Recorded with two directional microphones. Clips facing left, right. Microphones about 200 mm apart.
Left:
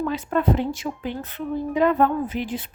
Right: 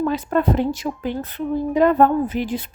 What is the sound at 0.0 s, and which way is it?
A woman's voice, 40° right (ahead or behind).